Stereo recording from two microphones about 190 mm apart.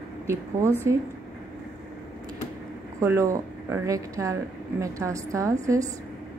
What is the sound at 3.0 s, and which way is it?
Speech, 15° right (ahead or behind).